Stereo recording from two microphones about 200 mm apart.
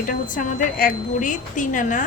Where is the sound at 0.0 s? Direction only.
45° left (ahead or behind).